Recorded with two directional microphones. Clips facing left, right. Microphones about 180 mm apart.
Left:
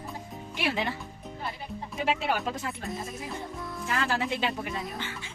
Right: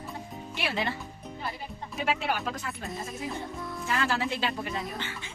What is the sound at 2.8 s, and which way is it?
Speech, centre (ahead or behind).